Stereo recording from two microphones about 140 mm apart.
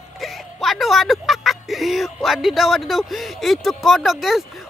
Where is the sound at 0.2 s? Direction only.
Centre (ahead or behind).